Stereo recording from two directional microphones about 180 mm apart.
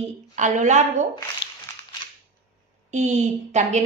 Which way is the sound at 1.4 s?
75° left (ahead or behind).